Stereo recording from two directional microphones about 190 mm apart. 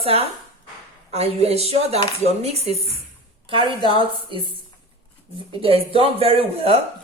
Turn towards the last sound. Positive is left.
turn(degrees=-30)  # may be behind; listen again after turning